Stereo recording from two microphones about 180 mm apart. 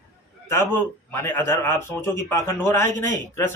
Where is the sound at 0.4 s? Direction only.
15° left (ahead or behind).